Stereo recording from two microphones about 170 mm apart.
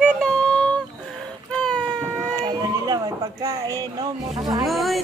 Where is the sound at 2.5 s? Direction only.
25° right (ahead or behind).